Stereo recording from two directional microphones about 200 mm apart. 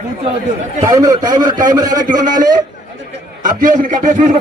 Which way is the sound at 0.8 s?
15° right (ahead or behind).